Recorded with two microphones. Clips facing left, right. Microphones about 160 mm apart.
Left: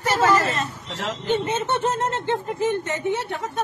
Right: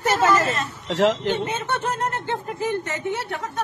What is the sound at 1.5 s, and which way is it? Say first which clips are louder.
Speech: left 3 dB; 20° left (ahead or behind).